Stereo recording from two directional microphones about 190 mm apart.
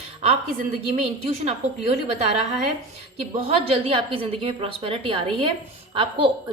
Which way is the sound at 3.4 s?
30° right (ahead or behind).